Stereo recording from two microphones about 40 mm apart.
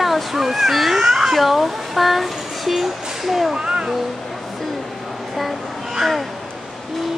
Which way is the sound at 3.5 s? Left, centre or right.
Right.